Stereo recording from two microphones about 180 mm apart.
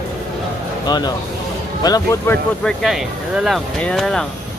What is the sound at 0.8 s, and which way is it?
Speech, 25° left (ahead or behind).